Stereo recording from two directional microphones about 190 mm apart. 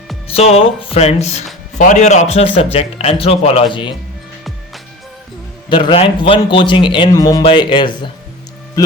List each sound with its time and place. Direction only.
0.3 s speech: 30° left (ahead or behind)
5.6 s a man's voice: 25° left (ahead or behind)